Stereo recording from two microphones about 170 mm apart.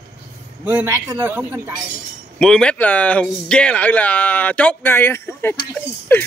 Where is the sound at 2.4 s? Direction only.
5° left (ahead or behind).